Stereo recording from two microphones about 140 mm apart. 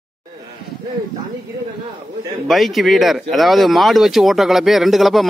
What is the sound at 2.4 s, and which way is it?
Speech, centre (ahead or behind).